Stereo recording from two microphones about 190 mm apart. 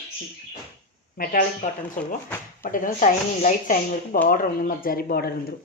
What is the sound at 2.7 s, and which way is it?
Speech, 45° left (ahead or behind).